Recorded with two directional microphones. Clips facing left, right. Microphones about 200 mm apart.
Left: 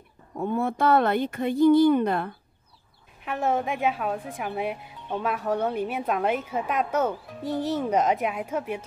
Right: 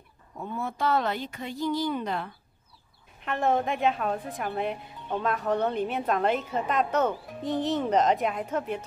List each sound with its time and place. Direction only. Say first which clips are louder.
0.4 s speech: left 6 dB; 55° left (ahead or behind)
3.3 s speech: even; 10° left (ahead or behind)